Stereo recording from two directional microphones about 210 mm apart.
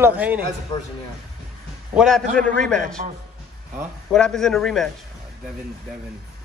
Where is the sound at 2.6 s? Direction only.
5° left (ahead or behind).